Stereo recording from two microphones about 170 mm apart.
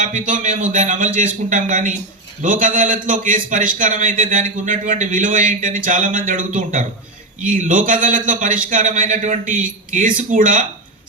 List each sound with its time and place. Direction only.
0.0 s a man's voice: 50° right (ahead or behind)